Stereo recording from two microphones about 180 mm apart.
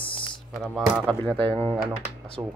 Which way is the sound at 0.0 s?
30° left (ahead or behind).